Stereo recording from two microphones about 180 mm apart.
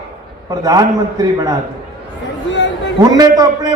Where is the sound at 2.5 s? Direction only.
90° left.